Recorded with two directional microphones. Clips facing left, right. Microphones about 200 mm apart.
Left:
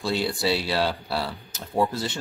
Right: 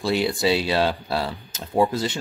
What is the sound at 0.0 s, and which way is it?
Speech, 15° right (ahead or behind).